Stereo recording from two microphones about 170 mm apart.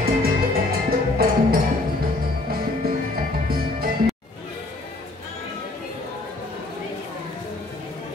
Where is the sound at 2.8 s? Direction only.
60° right (ahead or behind).